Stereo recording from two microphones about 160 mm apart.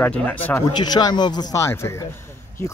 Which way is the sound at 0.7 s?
25° left (ahead or behind).